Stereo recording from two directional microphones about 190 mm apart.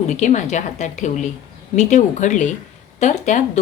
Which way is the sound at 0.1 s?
40° left (ahead or behind).